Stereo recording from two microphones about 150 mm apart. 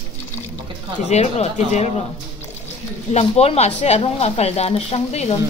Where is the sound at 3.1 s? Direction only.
45° left (ahead or behind).